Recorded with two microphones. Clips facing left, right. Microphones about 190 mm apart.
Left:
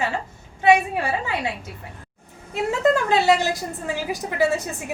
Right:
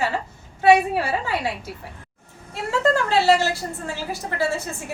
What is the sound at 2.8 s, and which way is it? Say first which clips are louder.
A woman's voice: even; 20° left (ahead or behind).